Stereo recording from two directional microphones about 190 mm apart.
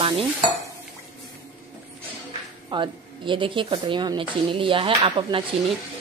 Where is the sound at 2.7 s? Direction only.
25° right (ahead or behind).